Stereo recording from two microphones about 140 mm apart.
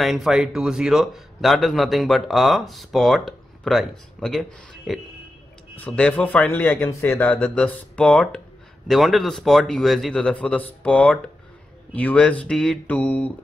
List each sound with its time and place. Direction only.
0.0 s a man's voice: centre (ahead or behind)